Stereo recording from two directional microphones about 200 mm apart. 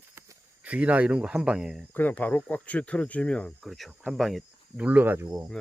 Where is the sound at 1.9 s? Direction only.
10° left (ahead or behind); by 5.5 s 10° right (ahead or behind).